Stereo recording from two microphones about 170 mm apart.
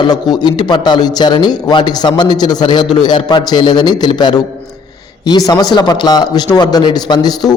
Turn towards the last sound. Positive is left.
turn(degrees=25)  # may be behind; listen again after turning